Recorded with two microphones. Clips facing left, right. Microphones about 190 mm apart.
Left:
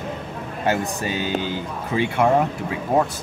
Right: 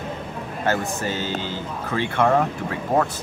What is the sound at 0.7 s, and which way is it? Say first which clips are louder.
Speech: left 1 dB; 15° left (ahead or behind).